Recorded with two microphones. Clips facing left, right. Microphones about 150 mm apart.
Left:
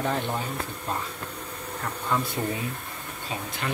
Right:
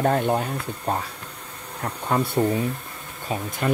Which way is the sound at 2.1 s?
65° right (ahead or behind).